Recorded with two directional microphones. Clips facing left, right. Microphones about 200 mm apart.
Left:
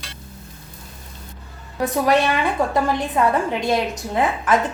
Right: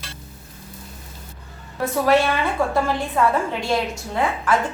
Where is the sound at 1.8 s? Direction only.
15° left (ahead or behind).